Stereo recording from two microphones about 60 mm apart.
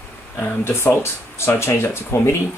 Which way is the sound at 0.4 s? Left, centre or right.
Left.